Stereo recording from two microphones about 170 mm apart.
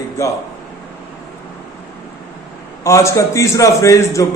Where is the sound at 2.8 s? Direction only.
15° left (ahead or behind).